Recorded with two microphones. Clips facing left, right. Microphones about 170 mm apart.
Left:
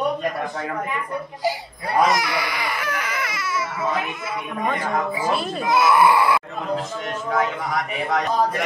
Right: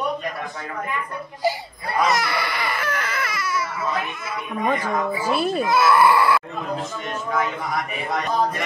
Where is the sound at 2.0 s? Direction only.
15° left (ahead or behind).